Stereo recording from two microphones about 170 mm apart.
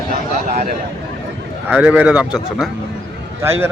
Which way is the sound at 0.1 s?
55° right (ahead or behind).